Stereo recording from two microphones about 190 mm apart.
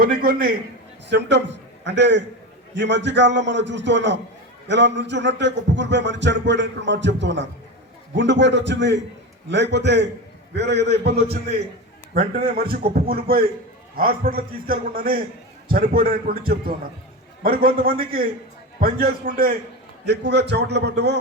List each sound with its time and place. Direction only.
0.0 s a man's voice: 55° right (ahead or behind)
2.7 s a sound: 65° right (ahead or behind)
9.5 s a man's voice: 65° right (ahead or behind)
20.1 s a man's voice: 60° right (ahead or behind)